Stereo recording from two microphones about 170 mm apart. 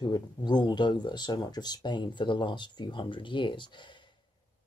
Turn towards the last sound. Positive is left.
turn(degrees=30)  # may be behind; listen again after turning